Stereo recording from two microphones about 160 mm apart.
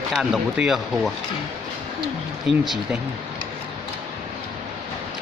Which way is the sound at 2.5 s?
Centre (ahead or behind).